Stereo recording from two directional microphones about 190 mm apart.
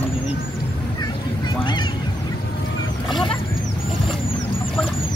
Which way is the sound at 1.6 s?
25° left (ahead or behind).